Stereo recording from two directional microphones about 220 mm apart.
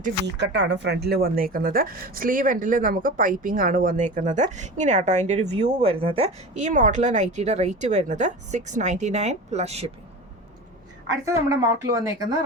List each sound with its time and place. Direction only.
0.3 s speech: 50° right (ahead or behind); by 9.9 s 30° right (ahead or behind)
11.3 s speech: 15° right (ahead or behind)